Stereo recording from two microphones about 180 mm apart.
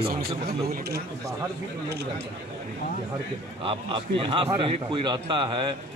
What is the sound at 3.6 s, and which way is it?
A man's voice, 30° right (ahead or behind).